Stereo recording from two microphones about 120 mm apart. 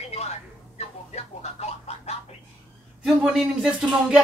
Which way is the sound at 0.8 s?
60° left (ahead or behind).